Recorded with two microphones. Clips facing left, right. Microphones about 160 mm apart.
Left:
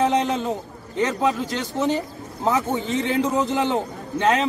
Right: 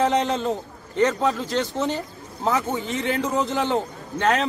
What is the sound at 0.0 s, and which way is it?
A man's voice, 20° left (ahead or behind).